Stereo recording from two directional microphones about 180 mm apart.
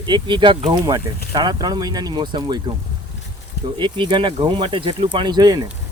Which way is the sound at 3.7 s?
25° right (ahead or behind).